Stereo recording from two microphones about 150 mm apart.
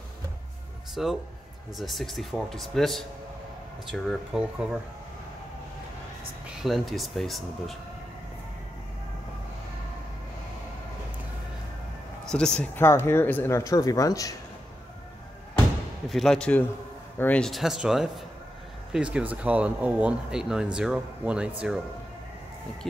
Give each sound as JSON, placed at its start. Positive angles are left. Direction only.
{"t": 1.0, "sound": "speech", "side_deg": 0}
{"t": 6.6, "sound": "speech", "side_deg": 0}
{"t": 12.3, "sound": "speech", "side_deg": 5}
{"t": 12.8, "sound": "speech", "side_deg": 15}
{"t": 16.1, "sound": "speech", "side_deg": 0}